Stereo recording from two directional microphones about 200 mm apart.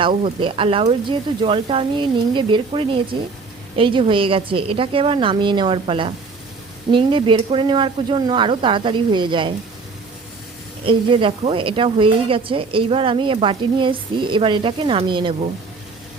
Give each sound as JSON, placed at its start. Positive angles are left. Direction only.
{"t": 0.0, "sound": "a woman's voice", "side_deg": -25}
{"t": 10.8, "sound": "a woman's voice", "side_deg": -25}